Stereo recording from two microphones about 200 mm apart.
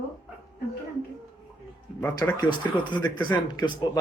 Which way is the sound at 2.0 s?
20° left (ahead or behind).